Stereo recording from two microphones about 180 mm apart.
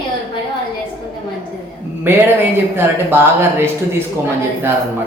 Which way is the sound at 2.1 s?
10° right (ahead or behind).